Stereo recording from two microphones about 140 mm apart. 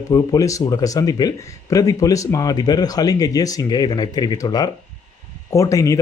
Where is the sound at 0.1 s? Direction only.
25° left (ahead or behind).